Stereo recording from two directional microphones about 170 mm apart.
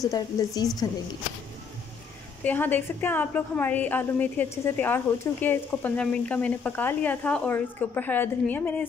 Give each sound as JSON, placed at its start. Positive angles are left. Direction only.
{"t": 0.0, "sound": "a woman's voice", "side_deg": 20}
{"t": 2.4, "sound": "a woman's voice", "side_deg": 10}